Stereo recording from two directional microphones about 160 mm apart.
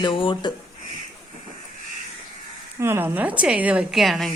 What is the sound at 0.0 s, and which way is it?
Speech, 30° left (ahead or behind).